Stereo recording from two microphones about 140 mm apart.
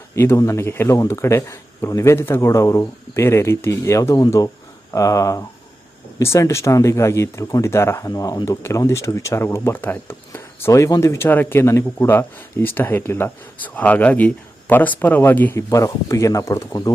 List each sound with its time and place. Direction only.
0.2 s speech: 20° left (ahead or behind)